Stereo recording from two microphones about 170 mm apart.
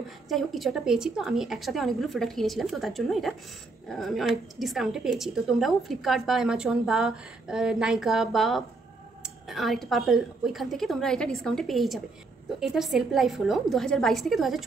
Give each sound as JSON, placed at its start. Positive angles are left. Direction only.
{"t": 0.3, "sound": "a woman's voice", "side_deg": 0}